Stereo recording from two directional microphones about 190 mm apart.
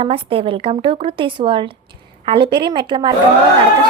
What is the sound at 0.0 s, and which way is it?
A woman's voice, 30° right (ahead or behind).